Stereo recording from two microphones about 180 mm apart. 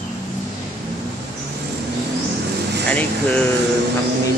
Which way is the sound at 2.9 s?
10° left (ahead or behind).